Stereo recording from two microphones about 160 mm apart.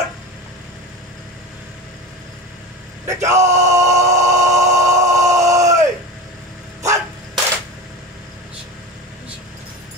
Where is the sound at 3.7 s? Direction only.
20° right (ahead or behind).